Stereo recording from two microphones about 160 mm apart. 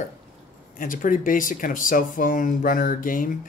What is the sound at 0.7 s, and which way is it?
Speech, 55° left (ahead or behind).